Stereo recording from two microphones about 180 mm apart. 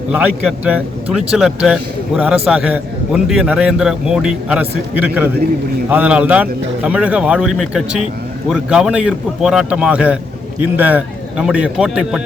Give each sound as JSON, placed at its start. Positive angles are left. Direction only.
{"t": 0.1, "sound": "a man's voice", "side_deg": -10}